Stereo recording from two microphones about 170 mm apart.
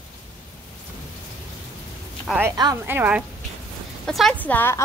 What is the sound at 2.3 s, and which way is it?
Speech, 10° right (ahead or behind).